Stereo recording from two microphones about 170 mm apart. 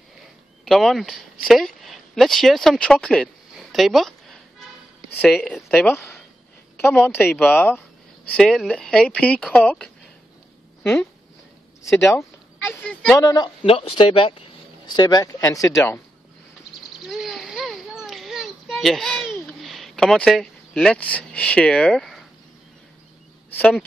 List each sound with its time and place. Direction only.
0.7 s speech: centre (ahead or behind)
12.1 s speech: 15° left (ahead or behind)
13.2 s speech: 25° left (ahead or behind)
17.0 s a sound: centre (ahead or behind)
23.5 s speech: 10° left (ahead or behind)